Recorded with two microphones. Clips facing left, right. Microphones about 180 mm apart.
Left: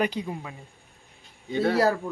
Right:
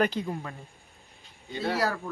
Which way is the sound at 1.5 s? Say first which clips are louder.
Left 6 dB; 60° left (ahead or behind).